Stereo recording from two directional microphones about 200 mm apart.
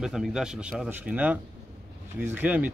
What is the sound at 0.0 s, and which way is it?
Speech, centre (ahead or behind).